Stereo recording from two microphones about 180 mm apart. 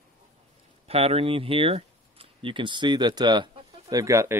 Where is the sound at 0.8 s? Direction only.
35° right (ahead or behind).